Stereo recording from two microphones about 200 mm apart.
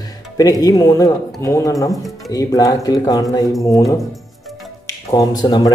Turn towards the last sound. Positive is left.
turn(degrees=20)  # may be behind; listen again after turning